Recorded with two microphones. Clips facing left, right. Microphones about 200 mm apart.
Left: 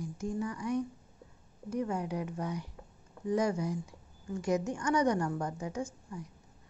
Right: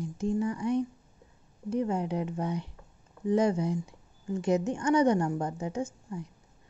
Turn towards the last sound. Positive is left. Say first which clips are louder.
# right 4 dB
turn(degrees=-25)  # may be behind; listen again after turning